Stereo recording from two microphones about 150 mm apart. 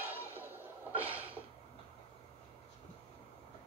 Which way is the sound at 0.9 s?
10° right (ahead or behind).